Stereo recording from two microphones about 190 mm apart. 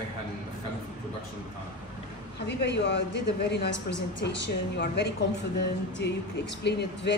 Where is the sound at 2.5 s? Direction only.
65° left (ahead or behind).